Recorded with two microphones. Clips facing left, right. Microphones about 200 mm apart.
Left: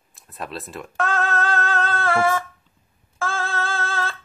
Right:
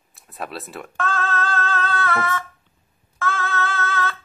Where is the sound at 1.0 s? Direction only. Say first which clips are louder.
Left 2 dB; 40° left (ahead or behind).